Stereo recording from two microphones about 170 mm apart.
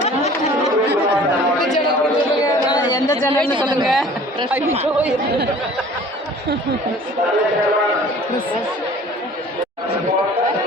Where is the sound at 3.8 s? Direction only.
Centre (ahead or behind).